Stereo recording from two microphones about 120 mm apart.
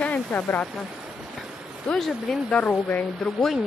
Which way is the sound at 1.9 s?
Centre (ahead or behind).